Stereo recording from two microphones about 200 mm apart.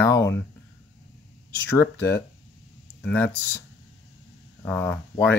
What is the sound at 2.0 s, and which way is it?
Speech, 60° left (ahead or behind).